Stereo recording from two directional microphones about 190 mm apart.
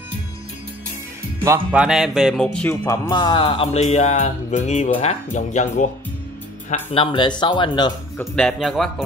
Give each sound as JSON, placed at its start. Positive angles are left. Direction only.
{"t": 1.4, "sound": "music", "side_deg": -10}
{"t": 6.7, "sound": "music", "side_deg": 30}
{"t": 8.2, "sound": "speech", "side_deg": 5}